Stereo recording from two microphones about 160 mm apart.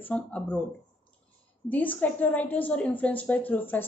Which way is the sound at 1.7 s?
10° left (ahead or behind).